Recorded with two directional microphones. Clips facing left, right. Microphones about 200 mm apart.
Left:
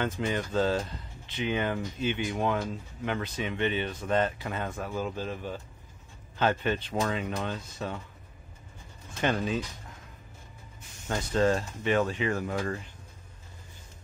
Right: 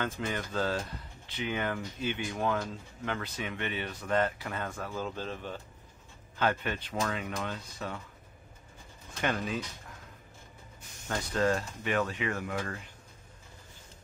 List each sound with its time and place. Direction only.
0.0 s speech: 20° left (ahead or behind)
6.3 s speech: 25° left (ahead or behind)
11.1 s speech: 25° left (ahead or behind)